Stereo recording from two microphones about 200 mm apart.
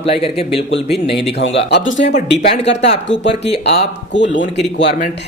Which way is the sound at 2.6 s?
60° left (ahead or behind).